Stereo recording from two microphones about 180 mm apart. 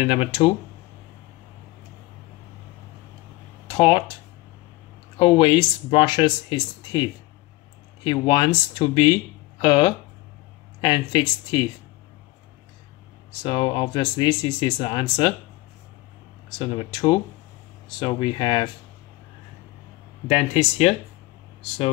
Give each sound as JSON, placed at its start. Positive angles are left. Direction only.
{"t": 0.0, "sound": "speech", "side_deg": 35}
{"t": 3.7, "sound": "speech", "side_deg": 30}
{"t": 5.1, "sound": "speech", "side_deg": 30}
{"t": 13.4, "sound": "speech", "side_deg": 30}
{"t": 16.5, "sound": "speech", "side_deg": 25}
{"t": 20.2, "sound": "speech", "side_deg": 35}